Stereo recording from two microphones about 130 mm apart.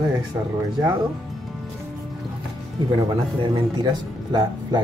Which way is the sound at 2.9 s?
35° right (ahead or behind).